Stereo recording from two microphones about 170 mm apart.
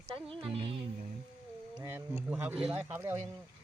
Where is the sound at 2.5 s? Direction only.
35° right (ahead or behind).